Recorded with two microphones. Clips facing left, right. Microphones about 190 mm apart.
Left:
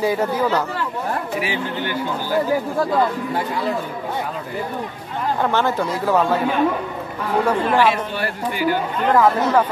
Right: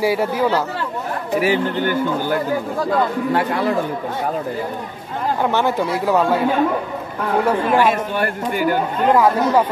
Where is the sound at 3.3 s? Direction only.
70° right (ahead or behind).